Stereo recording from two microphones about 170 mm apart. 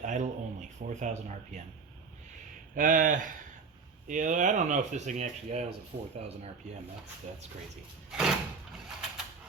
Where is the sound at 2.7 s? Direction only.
50° right (ahead or behind).